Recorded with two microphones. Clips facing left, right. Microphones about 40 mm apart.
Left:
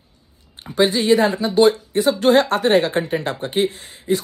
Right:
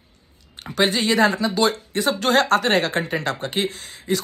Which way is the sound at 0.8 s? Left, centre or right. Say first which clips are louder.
Left 3 dB; right.